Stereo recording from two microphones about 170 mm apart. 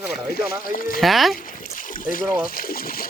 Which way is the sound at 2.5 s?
60° left (ahead or behind).